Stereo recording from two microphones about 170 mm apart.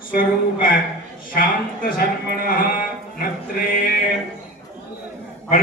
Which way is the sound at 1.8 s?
60° left (ahead or behind).